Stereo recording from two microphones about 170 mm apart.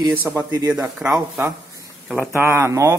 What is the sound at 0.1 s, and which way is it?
Speech, 10° right (ahead or behind).